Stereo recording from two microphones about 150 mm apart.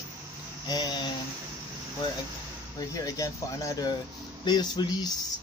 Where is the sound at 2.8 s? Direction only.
25° left (ahead or behind).